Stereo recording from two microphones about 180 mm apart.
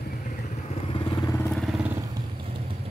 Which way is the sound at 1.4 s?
Centre (ahead or behind).